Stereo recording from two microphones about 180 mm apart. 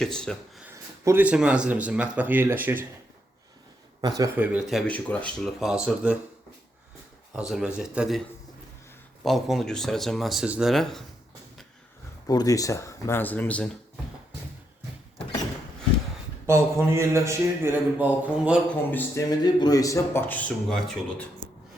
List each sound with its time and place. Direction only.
0.0 s speech: 5° left (ahead or behind)
0.6 s speech: 15° right (ahead or behind)
4.0 s speech: 20° right (ahead or behind)
4.4 s speech: 5° right (ahead or behind)
7.3 s speech: 5° right (ahead or behind)
9.2 s speech: centre (ahead or behind)
12.3 s speech: 20° left (ahead or behind)
16.5 s speech: 15° right (ahead or behind)
18.7 s speech: 10° left (ahead or behind)
19.5 s speech: 20° left (ahead or behind); by 21.2 s centre (ahead or behind)